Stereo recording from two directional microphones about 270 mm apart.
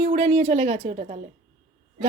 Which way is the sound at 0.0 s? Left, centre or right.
Right.